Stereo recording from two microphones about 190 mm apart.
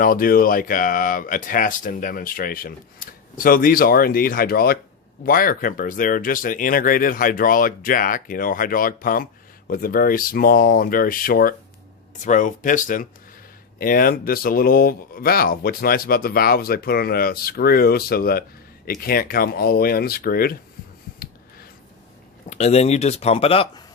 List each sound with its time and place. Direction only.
0.0 s speech: 50° left (ahead or behind)
22.4 s speech: 35° left (ahead or behind)